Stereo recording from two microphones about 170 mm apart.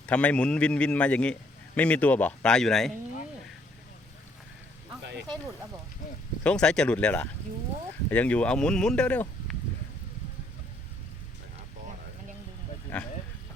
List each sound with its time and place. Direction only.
0.0 s a man's voice: 10° left (ahead or behind)
6.4 s speech: 5° left (ahead or behind)
12.9 s a man's voice: 5° left (ahead or behind)